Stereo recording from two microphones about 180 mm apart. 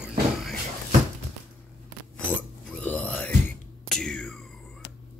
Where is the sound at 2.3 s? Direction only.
10° left (ahead or behind).